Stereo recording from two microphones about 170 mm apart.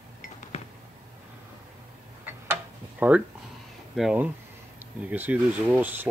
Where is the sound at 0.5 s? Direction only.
40° left (ahead or behind).